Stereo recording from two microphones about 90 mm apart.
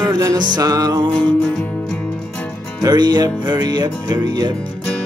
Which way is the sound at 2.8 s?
50° right (ahead or behind).